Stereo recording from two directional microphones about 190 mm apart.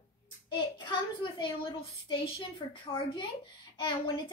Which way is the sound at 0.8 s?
25° left (ahead or behind).